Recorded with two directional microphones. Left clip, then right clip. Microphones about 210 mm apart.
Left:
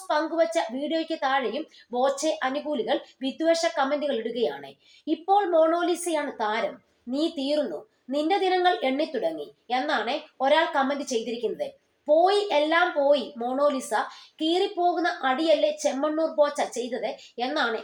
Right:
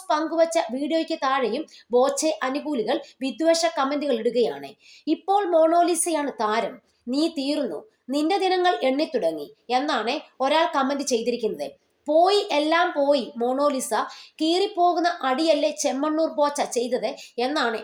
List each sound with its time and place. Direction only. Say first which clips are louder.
0.1 s a woman's voice: right 3 dB; 40° right (ahead or behind)